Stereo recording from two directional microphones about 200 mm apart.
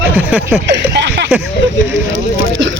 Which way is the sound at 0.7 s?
60° right (ahead or behind).